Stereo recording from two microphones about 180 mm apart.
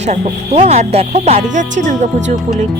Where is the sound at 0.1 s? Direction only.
40° right (ahead or behind).